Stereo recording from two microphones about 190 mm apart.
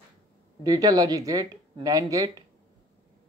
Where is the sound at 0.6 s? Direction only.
20° right (ahead or behind).